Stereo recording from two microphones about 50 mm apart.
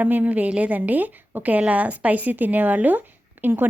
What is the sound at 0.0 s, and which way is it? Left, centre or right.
A woman's voice, right.